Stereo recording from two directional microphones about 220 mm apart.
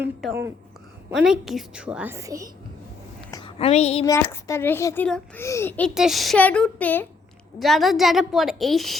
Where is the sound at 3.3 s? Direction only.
20° left (ahead or behind).